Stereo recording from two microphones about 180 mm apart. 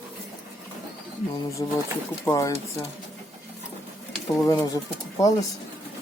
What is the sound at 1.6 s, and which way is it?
Speech, 20° left (ahead or behind).